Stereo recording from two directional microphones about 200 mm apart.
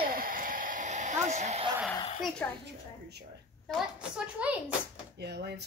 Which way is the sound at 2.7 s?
55° right (ahead or behind).